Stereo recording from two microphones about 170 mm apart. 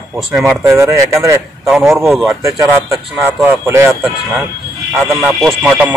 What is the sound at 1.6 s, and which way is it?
Speech, centre (ahead or behind).